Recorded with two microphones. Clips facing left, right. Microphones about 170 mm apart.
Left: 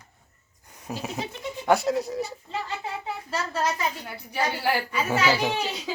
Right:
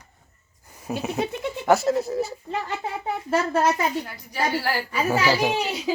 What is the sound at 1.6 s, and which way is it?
Speech, centre (ahead or behind).